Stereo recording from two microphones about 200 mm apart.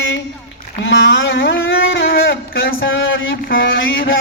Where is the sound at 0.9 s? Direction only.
75° left (ahead or behind).